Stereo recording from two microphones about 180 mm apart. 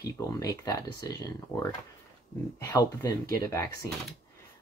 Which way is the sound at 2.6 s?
20° left (ahead or behind).